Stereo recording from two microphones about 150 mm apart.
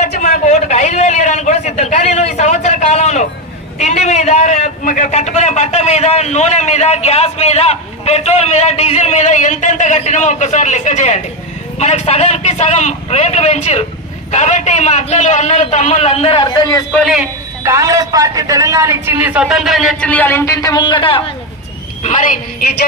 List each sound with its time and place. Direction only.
0.0 s a sound: 50° left (ahead or behind)
3.8 s a man's voice: 45° left (ahead or behind); by 16.8 s 30° left (ahead or behind)
16.9 s a man's voice: centre (ahead or behind)
17.6 s a man's voice: 20° right (ahead or behind); by 21.2 s 35° left (ahead or behind)
22.0 s a woman's voice: 55° left (ahead or behind); by 22.8 s 75° left (ahead or behind)